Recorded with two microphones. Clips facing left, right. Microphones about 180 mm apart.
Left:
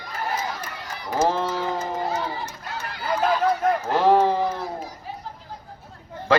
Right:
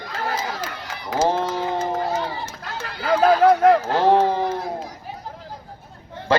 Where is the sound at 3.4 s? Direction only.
90° right.